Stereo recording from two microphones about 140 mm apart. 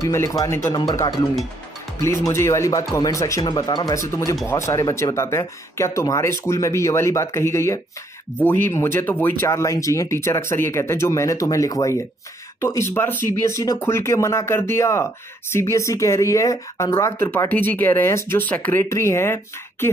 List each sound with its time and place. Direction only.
0.0 s speech: 20° left (ahead or behind)